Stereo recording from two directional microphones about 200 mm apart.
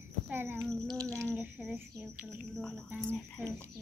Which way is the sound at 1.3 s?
5° right (ahead or behind).